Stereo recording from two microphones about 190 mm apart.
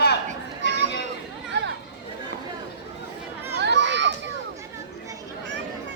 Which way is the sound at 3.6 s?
65° right (ahead or behind).